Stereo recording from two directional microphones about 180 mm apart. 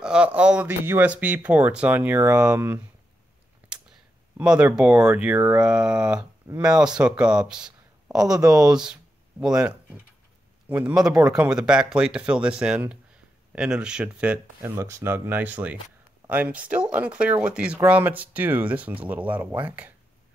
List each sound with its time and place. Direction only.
0.0 s speech: 5° right (ahead or behind)
3.7 s a sound: 5° right (ahead or behind)
4.4 s speech: 5° right (ahead or behind)
8.1 s speech: 20° right (ahead or behind)
8.7 s speech: 5° right (ahead or behind)